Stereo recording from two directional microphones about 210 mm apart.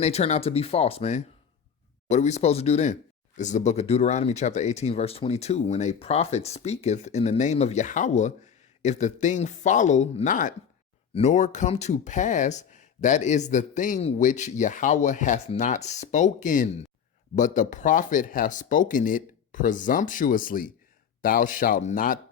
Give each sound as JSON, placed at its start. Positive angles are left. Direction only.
{"t": 0.0, "sound": "speech", "side_deg": 30}